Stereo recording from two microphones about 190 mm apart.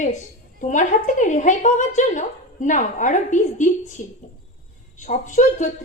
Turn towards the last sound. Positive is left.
turn(degrees=40)  # may be behind; listen again after turning